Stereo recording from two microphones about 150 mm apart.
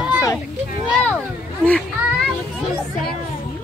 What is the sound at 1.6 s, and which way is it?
Speech, 5° left (ahead or behind).